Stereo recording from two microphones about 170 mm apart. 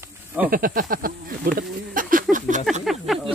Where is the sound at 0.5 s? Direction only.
55° right (ahead or behind).